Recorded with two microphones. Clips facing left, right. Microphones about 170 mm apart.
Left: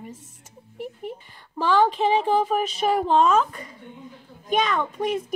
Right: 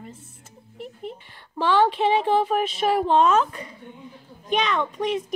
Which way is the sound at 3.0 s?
5° left (ahead or behind).